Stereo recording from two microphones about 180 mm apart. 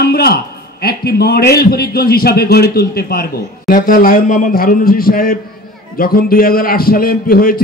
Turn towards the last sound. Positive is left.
turn(degrees=55)  # may be behind; listen again after turning